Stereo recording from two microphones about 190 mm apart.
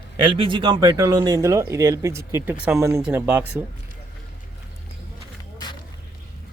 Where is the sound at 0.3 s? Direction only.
25° right (ahead or behind); by 3.6 s 10° right (ahead or behind).